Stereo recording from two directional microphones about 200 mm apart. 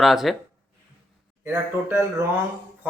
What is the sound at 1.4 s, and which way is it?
Speech, 10° right (ahead or behind).